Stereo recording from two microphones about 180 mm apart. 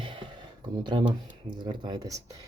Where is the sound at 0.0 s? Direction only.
25° right (ahead or behind).